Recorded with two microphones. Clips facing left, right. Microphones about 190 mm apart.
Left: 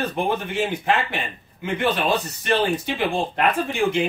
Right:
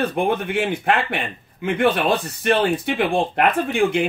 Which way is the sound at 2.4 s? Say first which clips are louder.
Right 3 dB; 55° right (ahead or behind).